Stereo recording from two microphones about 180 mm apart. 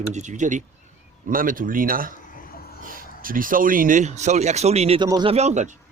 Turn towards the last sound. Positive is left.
turn(degrees=-40)  # may be behind; listen again after turning